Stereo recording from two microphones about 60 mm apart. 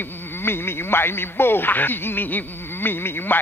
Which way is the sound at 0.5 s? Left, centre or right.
Left.